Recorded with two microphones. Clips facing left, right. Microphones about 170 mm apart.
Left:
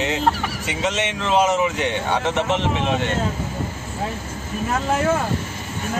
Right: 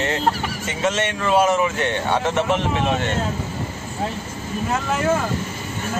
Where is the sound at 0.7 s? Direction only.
15° left (ahead or behind).